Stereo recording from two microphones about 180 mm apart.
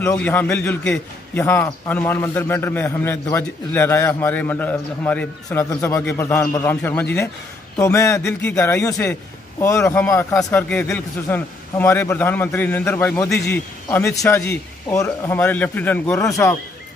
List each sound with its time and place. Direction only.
0.0 s a man's voice: 10° left (ahead or behind)